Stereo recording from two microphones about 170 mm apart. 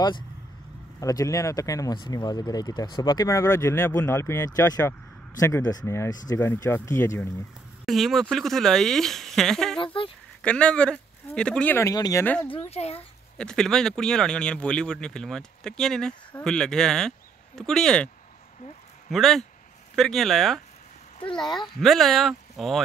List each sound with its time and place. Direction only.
1.0 s speech: 20° left (ahead or behind)
7.8 s speech: centre (ahead or behind)
11.9 s speech: 20° left (ahead or behind)
12.5 s a child's voice: 35° left (ahead or behind)
13.4 s speech: 5° left (ahead or behind)